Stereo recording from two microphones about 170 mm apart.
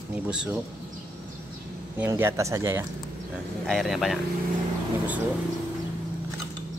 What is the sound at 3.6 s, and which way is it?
Speech, centre (ahead or behind).